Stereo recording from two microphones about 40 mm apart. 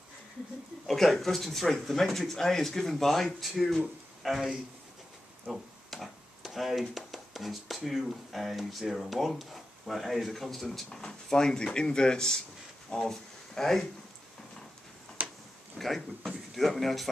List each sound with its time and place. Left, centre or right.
0.8 s speech: centre
15.2 s a sound: right
15.8 s speech: centre